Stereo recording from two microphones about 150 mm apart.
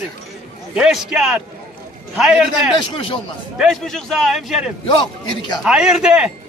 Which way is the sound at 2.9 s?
35° left (ahead or behind).